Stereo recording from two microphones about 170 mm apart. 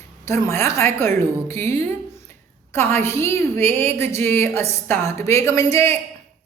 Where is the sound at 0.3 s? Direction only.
15° left (ahead or behind).